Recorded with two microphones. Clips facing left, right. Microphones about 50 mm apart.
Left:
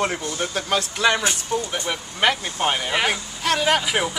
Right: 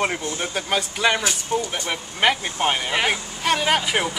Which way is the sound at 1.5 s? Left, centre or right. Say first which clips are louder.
Even; centre.